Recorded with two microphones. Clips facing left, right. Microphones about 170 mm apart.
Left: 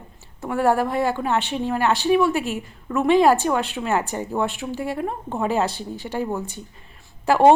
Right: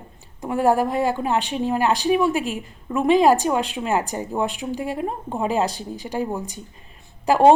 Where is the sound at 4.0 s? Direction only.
35° right (ahead or behind).